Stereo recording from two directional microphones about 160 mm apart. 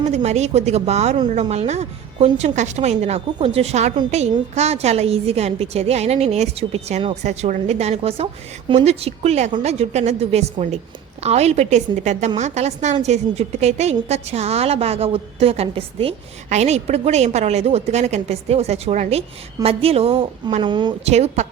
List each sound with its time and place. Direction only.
0.0 s a woman's voice: 45° right (ahead or behind)
20.6 s a woman's voice: 30° right (ahead or behind)
21.1 s a woman's voice: 45° right (ahead or behind)